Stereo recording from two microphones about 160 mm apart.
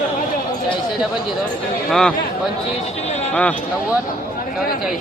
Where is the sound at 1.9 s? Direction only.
5° left (ahead or behind).